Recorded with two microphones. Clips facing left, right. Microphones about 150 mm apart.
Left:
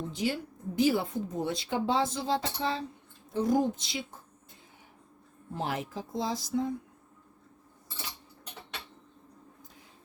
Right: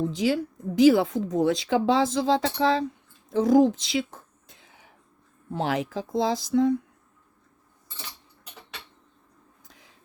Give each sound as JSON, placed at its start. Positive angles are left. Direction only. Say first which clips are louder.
{"t": 0.1, "sound": "speech", "louder": "right 7 dB", "side_deg": -90}
{"t": 3.2, "sound": "a sound", "louder": "right 8 dB", "side_deg": -90}
{"t": 5.5, "sound": "speech", "louder": "right 7 dB", "side_deg": -90}